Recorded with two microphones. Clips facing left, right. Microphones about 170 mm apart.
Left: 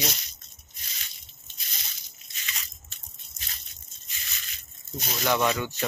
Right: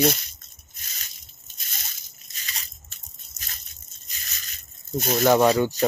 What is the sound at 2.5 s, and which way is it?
Crunch, 40° right (ahead or behind).